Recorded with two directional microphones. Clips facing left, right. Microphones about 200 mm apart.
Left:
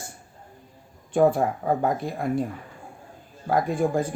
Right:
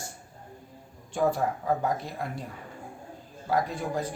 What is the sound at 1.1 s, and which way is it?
Speech, 55° left (ahead or behind).